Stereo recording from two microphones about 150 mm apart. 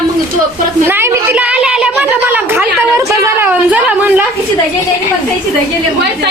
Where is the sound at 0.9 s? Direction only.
15° right (ahead or behind).